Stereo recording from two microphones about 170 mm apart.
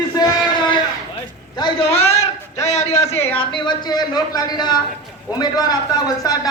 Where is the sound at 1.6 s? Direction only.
30° left (ahead or behind).